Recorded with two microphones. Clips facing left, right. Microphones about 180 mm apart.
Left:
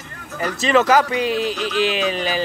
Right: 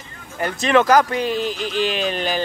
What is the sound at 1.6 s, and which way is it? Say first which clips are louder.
Music: left 2 dB; 45° right (ahead or behind).